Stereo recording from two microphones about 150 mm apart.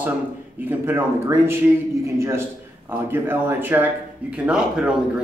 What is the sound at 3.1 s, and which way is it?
Speech, 15° right (ahead or behind).